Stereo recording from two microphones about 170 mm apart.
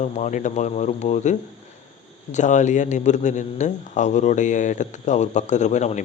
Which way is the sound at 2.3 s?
45° left (ahead or behind).